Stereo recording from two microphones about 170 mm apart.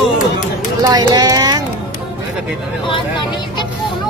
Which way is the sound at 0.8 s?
25° right (ahead or behind).